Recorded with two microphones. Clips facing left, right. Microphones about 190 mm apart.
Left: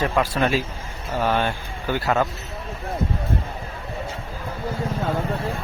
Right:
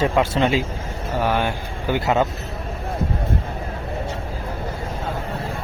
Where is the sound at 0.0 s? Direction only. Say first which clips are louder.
Right 3 dB; 25° right (ahead or behind).